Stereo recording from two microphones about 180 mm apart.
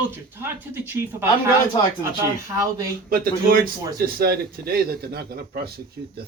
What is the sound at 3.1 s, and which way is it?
Speech, 55° right (ahead or behind).